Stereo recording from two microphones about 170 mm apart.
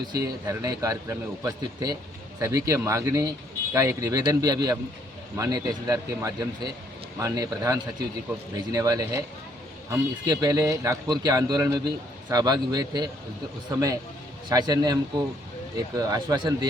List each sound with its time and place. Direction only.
0.1 s speech: 20° right (ahead or behind)
16.0 s speech: 20° right (ahead or behind)